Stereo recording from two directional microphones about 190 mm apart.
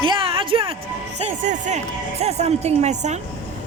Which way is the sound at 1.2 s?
40° right (ahead or behind).